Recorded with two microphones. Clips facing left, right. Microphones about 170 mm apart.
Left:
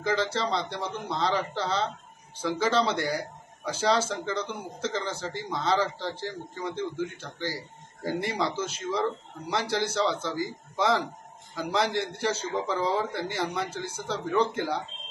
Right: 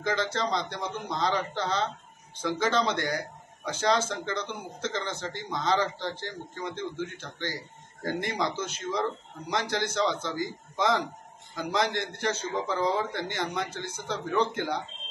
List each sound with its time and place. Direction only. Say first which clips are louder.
0.3 s a man's voice: even; 30° left (ahead or behind)
0.6 s a man's voice: left 1 dB; 5° left (ahead or behind)
2.9 s a man's voice: left 1 dB; 10° left (ahead or behind)